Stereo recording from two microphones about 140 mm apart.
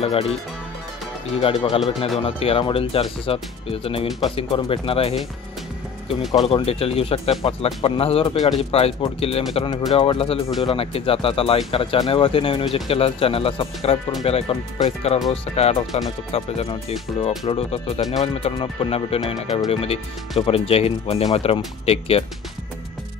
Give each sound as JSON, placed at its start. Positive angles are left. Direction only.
{"t": 0.0, "sound": "speech", "side_deg": 45}
{"t": 6.4, "sound": "speech", "side_deg": 45}